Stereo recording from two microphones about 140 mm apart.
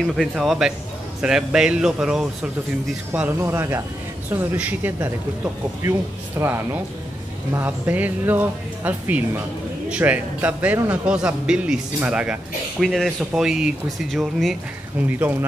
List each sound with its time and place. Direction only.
0.0 s a man's voice: centre (ahead or behind)
6.4 s a man's voice: 15° right (ahead or behind)